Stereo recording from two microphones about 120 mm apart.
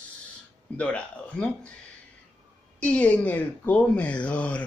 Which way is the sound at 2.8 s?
10° left (ahead or behind).